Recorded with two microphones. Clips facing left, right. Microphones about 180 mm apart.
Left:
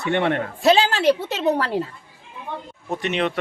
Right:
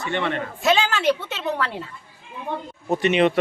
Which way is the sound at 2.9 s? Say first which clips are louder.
Right 5 dB; centre (ahead or behind).